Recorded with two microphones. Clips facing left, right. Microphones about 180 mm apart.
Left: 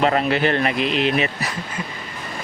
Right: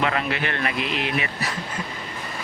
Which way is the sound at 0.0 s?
35° left (ahead or behind).